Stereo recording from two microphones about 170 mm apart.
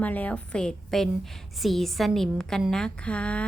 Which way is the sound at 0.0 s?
10° left (ahead or behind).